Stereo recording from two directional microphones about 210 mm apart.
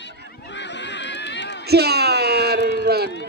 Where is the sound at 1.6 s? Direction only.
50° right (ahead or behind).